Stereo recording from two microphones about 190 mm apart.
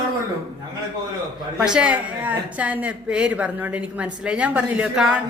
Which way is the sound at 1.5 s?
5° right (ahead or behind).